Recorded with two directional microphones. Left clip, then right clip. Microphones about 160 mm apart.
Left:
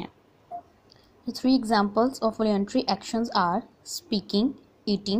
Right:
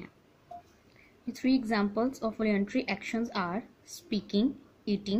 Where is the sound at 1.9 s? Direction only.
20° left (ahead or behind).